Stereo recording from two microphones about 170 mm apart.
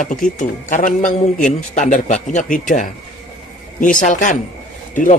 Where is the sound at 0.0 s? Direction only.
50° left (ahead or behind).